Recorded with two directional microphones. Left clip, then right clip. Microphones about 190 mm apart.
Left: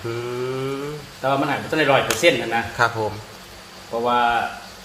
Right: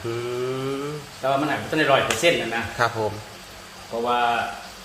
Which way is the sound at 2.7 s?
5° left (ahead or behind).